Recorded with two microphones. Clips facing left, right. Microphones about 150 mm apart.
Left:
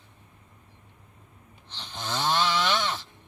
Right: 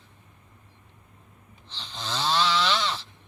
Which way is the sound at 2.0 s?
20° left (ahead or behind).